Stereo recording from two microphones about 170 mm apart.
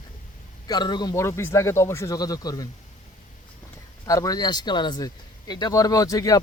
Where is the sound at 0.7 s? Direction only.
25° left (ahead or behind).